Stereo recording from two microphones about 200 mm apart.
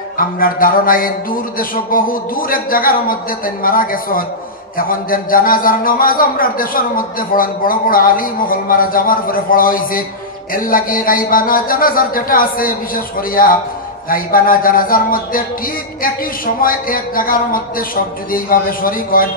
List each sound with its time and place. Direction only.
0.2 s speech: 45° left (ahead or behind)